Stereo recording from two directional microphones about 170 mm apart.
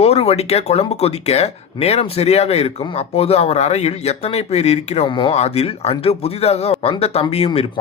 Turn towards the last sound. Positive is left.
turn(degrees=35)  # may be behind; listen again after turning